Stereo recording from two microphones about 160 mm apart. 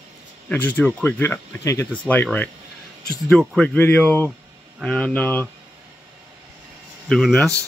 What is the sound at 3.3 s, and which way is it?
Speech, 5° left (ahead or behind).